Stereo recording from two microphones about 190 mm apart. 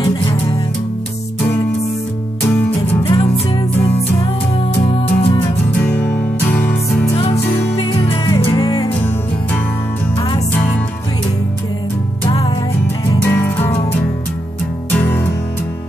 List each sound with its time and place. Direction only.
0.0 s music: 25° left (ahead or behind)
3.0 s music: 30° left (ahead or behind)
5.7 s music: 5° left (ahead or behind)
7.7 s music: 30° left (ahead or behind)
10.1 s music: 25° left (ahead or behind)
12.3 s music: 25° left (ahead or behind)
13.2 s music: 10° left (ahead or behind)
15.0 s music: 10° left (ahead or behind)